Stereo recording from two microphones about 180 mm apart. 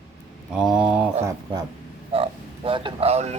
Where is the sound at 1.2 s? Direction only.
20° right (ahead or behind).